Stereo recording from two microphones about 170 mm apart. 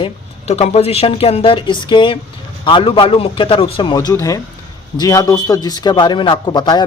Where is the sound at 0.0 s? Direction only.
35° left (ahead or behind).